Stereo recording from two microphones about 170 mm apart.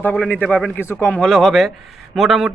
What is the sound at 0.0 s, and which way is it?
A man's voice, 10° left (ahead or behind).